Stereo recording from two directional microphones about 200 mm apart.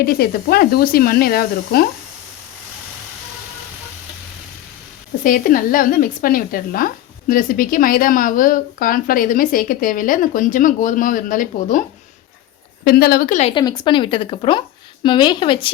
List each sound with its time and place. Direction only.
0.0 s speech: 50° left (ahead or behind)
5.2 s speech: 45° left (ahead or behind)
12.8 s speech: 50° left (ahead or behind)
13.5 s speech: 20° left (ahead or behind)